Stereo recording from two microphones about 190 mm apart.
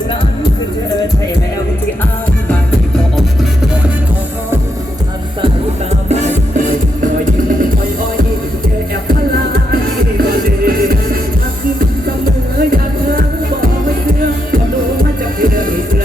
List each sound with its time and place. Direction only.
6.1 s music: 35° right (ahead or behind)
10.2 s music: 50° right (ahead or behind)
12.7 s music: 50° right (ahead or behind)